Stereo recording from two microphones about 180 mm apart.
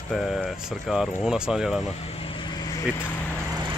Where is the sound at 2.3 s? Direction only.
20° left (ahead or behind).